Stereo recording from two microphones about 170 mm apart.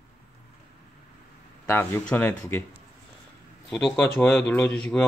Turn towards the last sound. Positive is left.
turn(degrees=10)  # may be behind; listen again after turning